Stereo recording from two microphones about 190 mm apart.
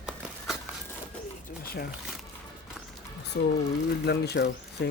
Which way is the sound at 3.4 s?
55° left (ahead or behind).